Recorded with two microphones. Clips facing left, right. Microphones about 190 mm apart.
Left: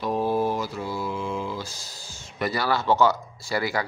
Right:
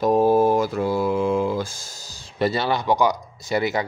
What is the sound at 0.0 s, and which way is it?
Mantra, 45° right (ahead or behind).